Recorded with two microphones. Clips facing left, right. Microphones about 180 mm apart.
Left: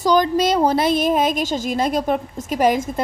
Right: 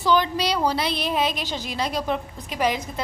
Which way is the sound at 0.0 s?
40° left (ahead or behind).